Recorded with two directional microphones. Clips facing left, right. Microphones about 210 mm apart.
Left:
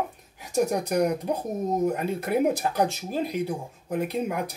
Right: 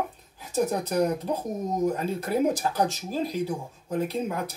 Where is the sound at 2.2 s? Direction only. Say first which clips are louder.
Left 1 dB; 60° left (ahead or behind).